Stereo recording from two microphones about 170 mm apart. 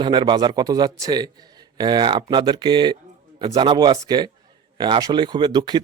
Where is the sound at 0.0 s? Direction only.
30° right (ahead or behind).